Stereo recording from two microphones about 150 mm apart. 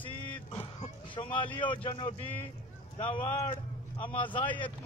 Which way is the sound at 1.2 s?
35° left (ahead or behind).